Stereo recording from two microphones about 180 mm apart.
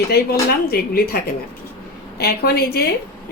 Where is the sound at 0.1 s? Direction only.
60° left (ahead or behind).